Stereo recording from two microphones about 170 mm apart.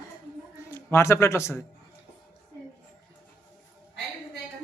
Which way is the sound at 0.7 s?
15° left (ahead or behind).